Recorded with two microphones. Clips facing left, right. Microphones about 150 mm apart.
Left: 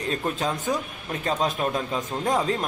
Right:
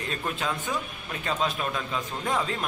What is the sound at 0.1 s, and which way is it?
A man's voice, 40° left (ahead or behind).